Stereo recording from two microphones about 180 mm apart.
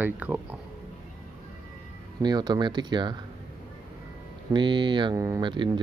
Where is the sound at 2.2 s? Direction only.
25° right (ahead or behind).